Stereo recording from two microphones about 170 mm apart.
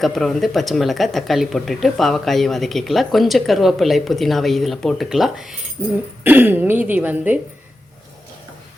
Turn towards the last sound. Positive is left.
turn(degrees=-10)  # may be behind; listen again after turning